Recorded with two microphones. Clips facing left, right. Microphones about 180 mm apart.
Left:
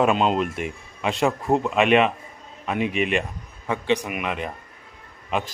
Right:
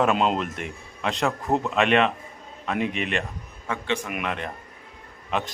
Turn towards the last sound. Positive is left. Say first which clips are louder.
# left 1 dB
turn(degrees=5)  # may be behind; listen again after turning